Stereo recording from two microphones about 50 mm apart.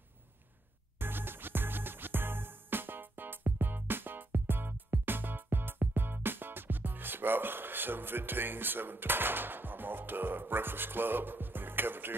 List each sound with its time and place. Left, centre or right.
0.9 s music: right